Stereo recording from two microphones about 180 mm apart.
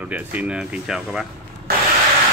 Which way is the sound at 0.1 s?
10° right (ahead or behind).